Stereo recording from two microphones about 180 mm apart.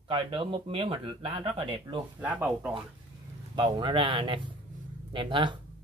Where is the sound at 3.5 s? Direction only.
25° right (ahead or behind).